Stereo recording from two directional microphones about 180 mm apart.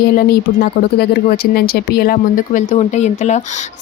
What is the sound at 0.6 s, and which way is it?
A woman's voice, 60° left (ahead or behind).